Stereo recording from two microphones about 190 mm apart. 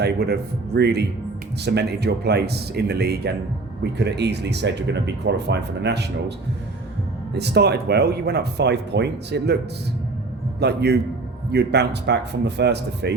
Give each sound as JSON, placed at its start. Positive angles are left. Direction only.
{"t": 0.0, "sound": "speech", "side_deg": -60}
{"t": 7.3, "sound": "speech", "side_deg": -60}
{"t": 10.6, "sound": "speech", "side_deg": -60}